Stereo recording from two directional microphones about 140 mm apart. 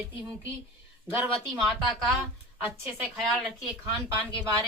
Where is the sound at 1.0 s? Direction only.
15° right (ahead or behind).